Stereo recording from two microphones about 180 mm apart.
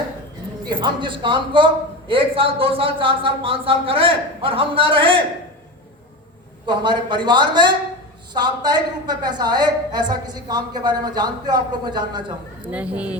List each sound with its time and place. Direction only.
0.7 s a man's voice: 25° right (ahead or behind)
6.7 s a man's voice: 25° right (ahead or behind)
12.6 s speech: 5° right (ahead or behind)